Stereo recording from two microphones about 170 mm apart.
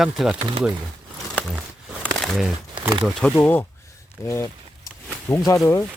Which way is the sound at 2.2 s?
Centre (ahead or behind).